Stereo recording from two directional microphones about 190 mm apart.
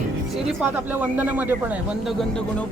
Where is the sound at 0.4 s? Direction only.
10° right (ahead or behind).